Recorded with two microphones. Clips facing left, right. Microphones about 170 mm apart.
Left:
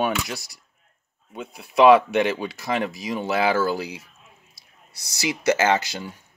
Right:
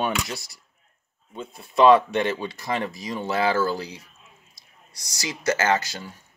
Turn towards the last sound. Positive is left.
turn(degrees=15)  # may be behind; listen again after turning